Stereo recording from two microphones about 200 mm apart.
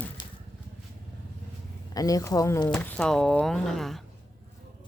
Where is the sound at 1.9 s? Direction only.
15° left (ahead or behind).